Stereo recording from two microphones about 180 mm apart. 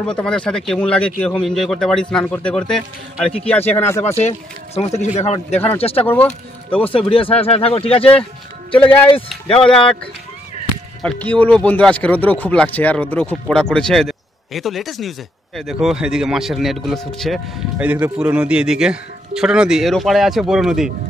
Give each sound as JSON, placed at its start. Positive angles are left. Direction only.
{"t": 0.0, "sound": "speech", "side_deg": 5}
{"t": 4.2, "sound": "speech", "side_deg": 35}
{"t": 6.0, "sound": "speech", "side_deg": 10}
{"t": 7.1, "sound": "speech", "side_deg": 30}
{"t": 11.0, "sound": "speech", "side_deg": 5}